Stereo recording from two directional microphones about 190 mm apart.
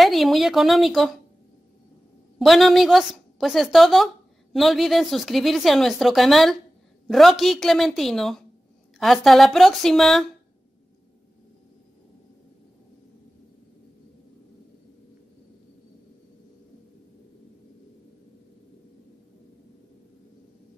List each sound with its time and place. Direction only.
0.0 s a woman's voice: centre (ahead or behind)
2.3 s a woman's voice: centre (ahead or behind)